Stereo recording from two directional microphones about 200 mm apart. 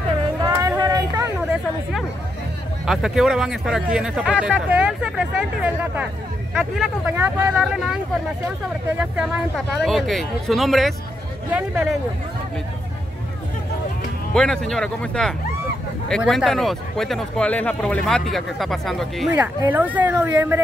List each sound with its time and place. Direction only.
0.6 s a sound: 20° right (ahead or behind)
2.9 s speech: centre (ahead or behind)
7.2 s speech: 15° right (ahead or behind)
9.0 s speech: 5° right (ahead or behind)
14.3 s speech: 5° left (ahead or behind)
19.3 s speech: 10° right (ahead or behind)